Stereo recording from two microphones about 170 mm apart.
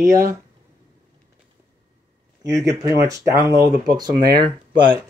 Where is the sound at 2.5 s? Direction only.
20° right (ahead or behind).